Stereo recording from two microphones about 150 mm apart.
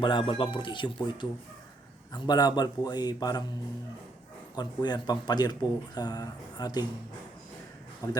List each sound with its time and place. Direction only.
0.0 s speech: 30° left (ahead or behind)
4.5 s speech: 30° left (ahead or behind)
8.0 s speech: 25° left (ahead or behind)